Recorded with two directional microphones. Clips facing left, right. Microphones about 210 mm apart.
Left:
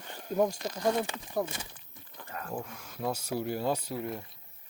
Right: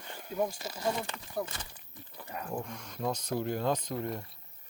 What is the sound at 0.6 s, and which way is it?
Speech, 5° right (ahead or behind).